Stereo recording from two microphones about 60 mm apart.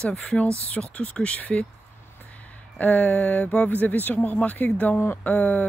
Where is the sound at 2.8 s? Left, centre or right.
Left.